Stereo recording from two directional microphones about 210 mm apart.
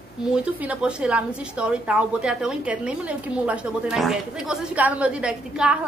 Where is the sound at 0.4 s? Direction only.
5° right (ahead or behind).